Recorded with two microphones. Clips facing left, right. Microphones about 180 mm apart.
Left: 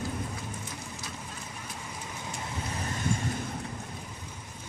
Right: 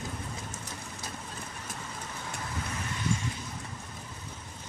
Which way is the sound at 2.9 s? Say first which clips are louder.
Left 2 dB; 50° left (ahead or behind).